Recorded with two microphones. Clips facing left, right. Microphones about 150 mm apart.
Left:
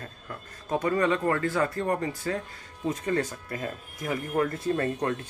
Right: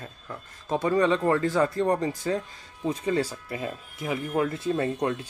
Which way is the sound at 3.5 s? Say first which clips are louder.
Right 1 dB; 20° right (ahead or behind).